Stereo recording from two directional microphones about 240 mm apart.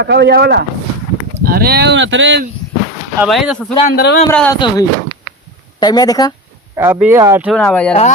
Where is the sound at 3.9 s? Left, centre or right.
Left.